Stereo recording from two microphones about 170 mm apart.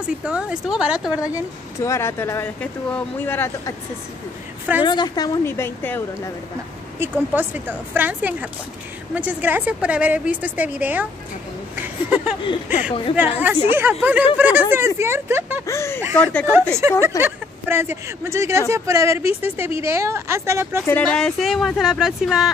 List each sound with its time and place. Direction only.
0.2 s speech: 5° right (ahead or behind)
1.8 s speech: 15° left (ahead or behind)
4.8 s speech: 25° left (ahead or behind)
7.0 s a woman's voice: 10° right (ahead or behind)
11.7 s a sound: 10° right (ahead or behind)
13.1 s a woman's voice: 10° right (ahead or behind)
15.6 s speech: 15° left (ahead or behind)
16.5 s a woman's voice: 15° right (ahead or behind)
20.8 s speech: 10° left (ahead or behind)